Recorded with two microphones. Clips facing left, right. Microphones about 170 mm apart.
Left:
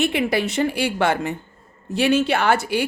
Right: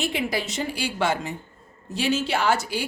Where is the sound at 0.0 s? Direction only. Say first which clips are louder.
Left 6 dB; 60° left (ahead or behind).